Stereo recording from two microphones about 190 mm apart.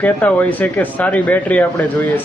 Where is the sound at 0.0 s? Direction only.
10° left (ahead or behind).